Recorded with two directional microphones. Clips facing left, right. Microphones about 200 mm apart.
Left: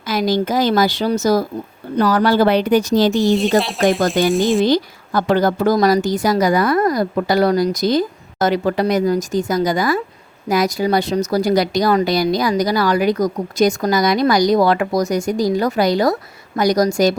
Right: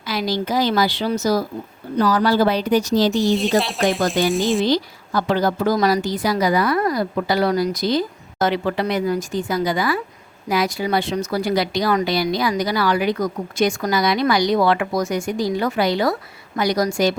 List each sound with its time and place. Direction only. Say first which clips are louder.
0.1 s a woman's voice: left 4 dB; 45° left (ahead or behind)
2.0 s speech: left 2 dB; 60° left (ahead or behind)
3.1 s speech: left 3 dB; 15° left (ahead or behind)
3.3 s speech: left 3 dB; centre (ahead or behind)
4.6 s a woman's voice: left 4 dB; 50° left (ahead or behind)